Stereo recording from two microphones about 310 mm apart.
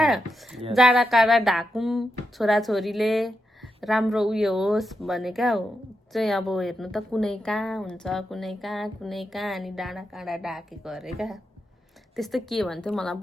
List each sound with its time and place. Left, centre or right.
0.0 s a woman's voice: centre